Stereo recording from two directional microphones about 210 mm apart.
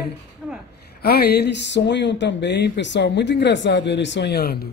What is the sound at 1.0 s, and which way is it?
Speech, 50° left (ahead or behind).